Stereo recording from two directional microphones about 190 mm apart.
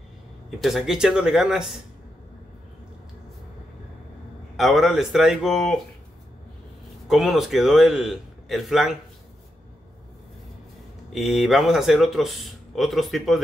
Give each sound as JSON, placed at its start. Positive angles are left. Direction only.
{"t": 0.6, "sound": "speech", "side_deg": 0}
{"t": 4.6, "sound": "speech", "side_deg": 0}
{"t": 7.1, "sound": "speech", "side_deg": 0}
{"t": 11.1, "sound": "speech", "side_deg": 0}